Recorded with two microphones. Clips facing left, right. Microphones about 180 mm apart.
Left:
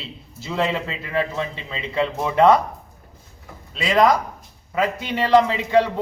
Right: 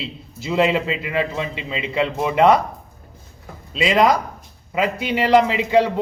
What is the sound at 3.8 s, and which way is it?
Speech, 20° right (ahead or behind).